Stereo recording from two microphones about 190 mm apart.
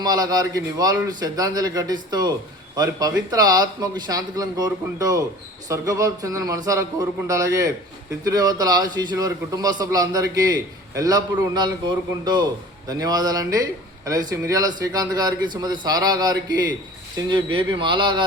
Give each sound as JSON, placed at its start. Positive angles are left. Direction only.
{"t": 0.0, "sound": "a man's voice", "side_deg": -20}